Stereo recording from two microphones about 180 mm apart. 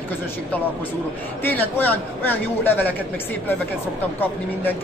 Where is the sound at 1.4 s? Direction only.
10° left (ahead or behind).